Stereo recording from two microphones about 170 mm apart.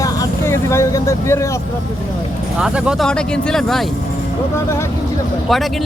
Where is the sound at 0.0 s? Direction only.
20° left (ahead or behind).